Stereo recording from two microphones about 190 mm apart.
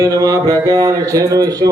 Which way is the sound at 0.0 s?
20° right (ahead or behind).